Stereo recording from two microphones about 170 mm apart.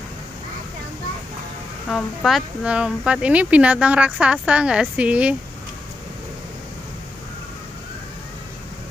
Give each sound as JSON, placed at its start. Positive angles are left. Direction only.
{"t": 1.9, "sound": "speech", "side_deg": 0}